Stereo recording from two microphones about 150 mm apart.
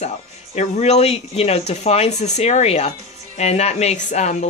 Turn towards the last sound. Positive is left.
turn(degrees=50)  # may be behind; listen again after turning